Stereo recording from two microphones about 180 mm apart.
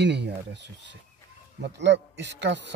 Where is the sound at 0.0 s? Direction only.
75° right (ahead or behind).